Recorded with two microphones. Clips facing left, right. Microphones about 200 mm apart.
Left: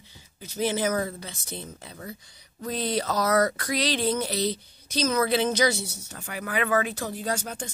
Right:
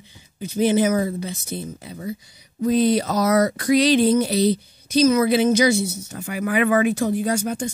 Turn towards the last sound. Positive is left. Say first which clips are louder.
# right 8 dB
turn(degrees=-10)  # may be behind; listen again after turning